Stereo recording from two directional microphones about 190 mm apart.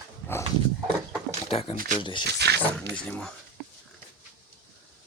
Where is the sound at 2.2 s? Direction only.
60° right (ahead or behind).